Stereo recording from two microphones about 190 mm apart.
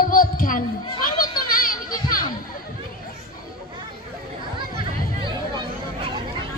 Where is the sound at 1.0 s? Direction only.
50° left (ahead or behind).